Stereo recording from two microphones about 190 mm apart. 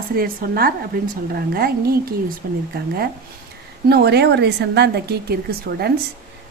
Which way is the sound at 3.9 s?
60° right (ahead or behind).